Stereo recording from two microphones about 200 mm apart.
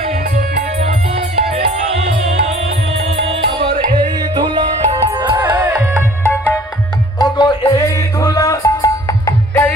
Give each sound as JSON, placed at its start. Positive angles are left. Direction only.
{"t": 1.1, "sound": "music", "side_deg": -30}
{"t": 5.4, "sound": "music", "side_deg": -10}
{"t": 7.2, "sound": "music", "side_deg": 20}